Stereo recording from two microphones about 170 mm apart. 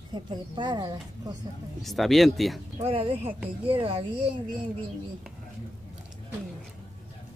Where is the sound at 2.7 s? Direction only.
35° right (ahead or behind).